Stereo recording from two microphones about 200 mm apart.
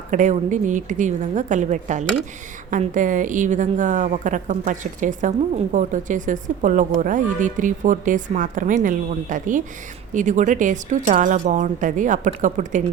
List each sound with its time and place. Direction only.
0.1 s speech: 40° right (ahead or behind)